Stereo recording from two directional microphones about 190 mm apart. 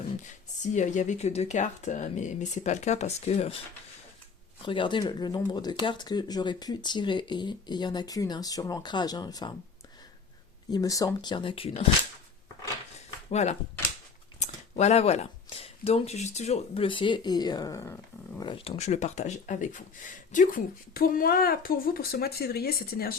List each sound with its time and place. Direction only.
0.3 s speech: 40° left (ahead or behind)
4.6 s speech: 25° left (ahead or behind)
10.7 s speech: 20° left (ahead or behind)
13.3 s speech: 35° left (ahead or behind); by 17.9 s 15° left (ahead or behind)
18.3 s speech: 25° left (ahead or behind); by 23.1 s 55° left (ahead or behind)